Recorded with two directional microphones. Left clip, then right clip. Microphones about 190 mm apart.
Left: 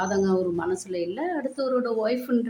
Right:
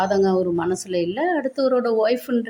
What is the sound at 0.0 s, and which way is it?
Speech, 25° right (ahead or behind).